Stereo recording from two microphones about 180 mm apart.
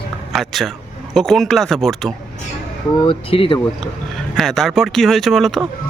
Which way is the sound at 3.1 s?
30° left (ahead or behind).